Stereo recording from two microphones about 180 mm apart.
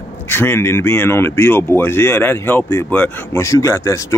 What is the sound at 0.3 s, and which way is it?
Speech, 10° left (ahead or behind).